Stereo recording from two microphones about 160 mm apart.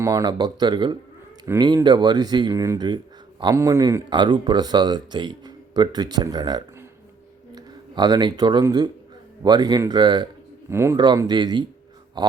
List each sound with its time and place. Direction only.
0.0 s speech: 20° right (ahead or behind)
7.5 s a sound: 25° right (ahead or behind)
8.6 s speech: 25° right (ahead or behind)
10.7 s speech: 15° right (ahead or behind)
11.0 s speech: 25° right (ahead or behind)